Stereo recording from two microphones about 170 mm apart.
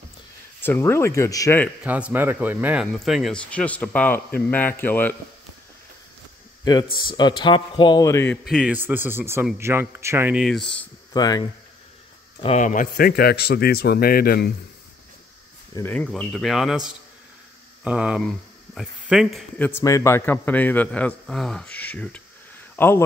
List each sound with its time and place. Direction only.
0.6 s a man's voice: 15° left (ahead or behind)
1.8 s a man's voice: 5° right (ahead or behind); by 5.1 s 10° left (ahead or behind)
6.6 s speech: 25° left (ahead or behind)
8.5 s speech: 5° right (ahead or behind)
10.4 s speech: centre (ahead or behind)
11.1 s speech: 25° left (ahead or behind)
12.4 s a man's voice: 45° left (ahead or behind); by 14.5 s 65° left (ahead or behind)
15.7 s speech: 10° left (ahead or behind)
19.6 s a man's voice: 15° left (ahead or behind)